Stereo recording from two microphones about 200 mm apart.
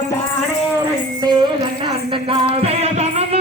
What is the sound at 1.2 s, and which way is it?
Music, 20° right (ahead or behind).